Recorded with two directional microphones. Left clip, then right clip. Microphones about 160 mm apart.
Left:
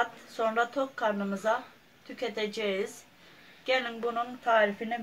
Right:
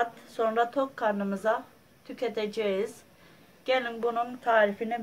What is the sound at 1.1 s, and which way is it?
Speech, 5° right (ahead or behind).